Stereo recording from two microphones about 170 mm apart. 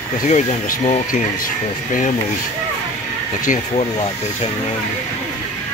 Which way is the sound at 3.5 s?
50° left (ahead or behind).